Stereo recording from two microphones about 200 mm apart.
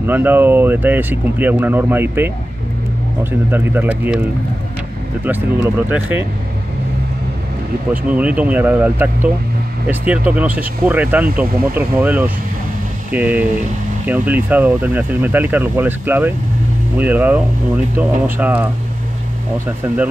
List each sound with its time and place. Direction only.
0.0 s speech: 10° right (ahead or behind)
5.2 s speech: 10° right (ahead or behind)
7.9 s speech: 5° right (ahead or behind)